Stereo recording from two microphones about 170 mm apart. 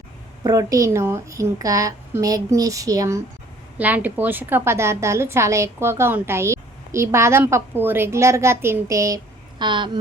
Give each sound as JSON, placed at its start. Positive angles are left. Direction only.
{"t": 0.4, "sound": "a woman's voice", "side_deg": -20}
{"t": 3.8, "sound": "a woman's voice", "side_deg": -10}